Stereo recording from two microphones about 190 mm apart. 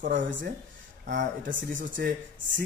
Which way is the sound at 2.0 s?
60° right (ahead or behind).